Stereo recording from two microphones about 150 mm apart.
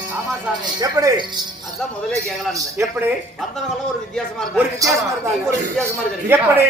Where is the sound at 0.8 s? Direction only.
25° right (ahead or behind).